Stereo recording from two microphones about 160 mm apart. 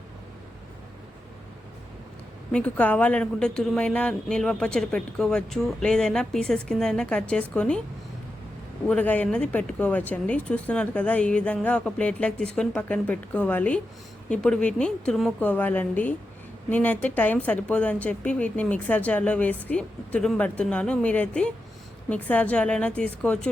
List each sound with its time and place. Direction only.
2.5 s speech: 5° left (ahead or behind)
8.9 s speech: 10° left (ahead or behind)